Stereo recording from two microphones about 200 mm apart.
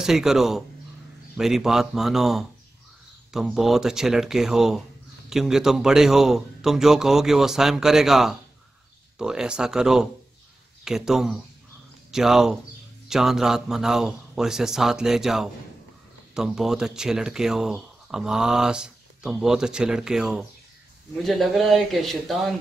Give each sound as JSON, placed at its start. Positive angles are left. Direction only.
{"t": 0.0, "sound": "speech", "side_deg": 0}